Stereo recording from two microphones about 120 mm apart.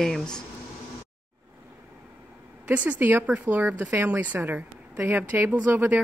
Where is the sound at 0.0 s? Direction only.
5° left (ahead or behind).